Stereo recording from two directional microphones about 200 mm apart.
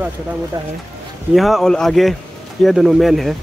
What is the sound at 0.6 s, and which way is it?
Speech, 20° right (ahead or behind).